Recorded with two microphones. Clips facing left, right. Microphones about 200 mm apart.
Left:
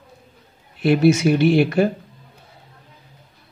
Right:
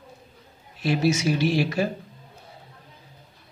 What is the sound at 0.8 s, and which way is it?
Speech, 60° left (ahead or behind).